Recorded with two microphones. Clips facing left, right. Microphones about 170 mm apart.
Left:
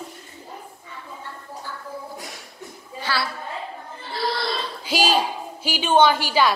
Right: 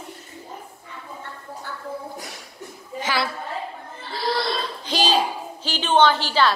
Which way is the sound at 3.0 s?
20° right (ahead or behind).